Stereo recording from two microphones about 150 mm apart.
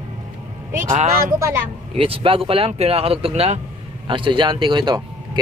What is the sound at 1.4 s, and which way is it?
Speech, 20° right (ahead or behind).